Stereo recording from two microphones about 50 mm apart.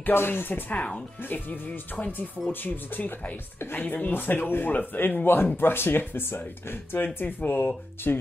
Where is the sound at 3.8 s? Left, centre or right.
Left.